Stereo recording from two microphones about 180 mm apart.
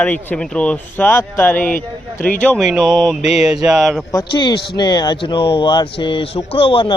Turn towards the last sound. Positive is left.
turn(degrees=30)  # may be behind; listen again after turning